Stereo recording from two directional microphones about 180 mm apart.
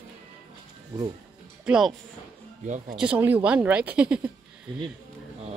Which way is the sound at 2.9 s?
5° right (ahead or behind).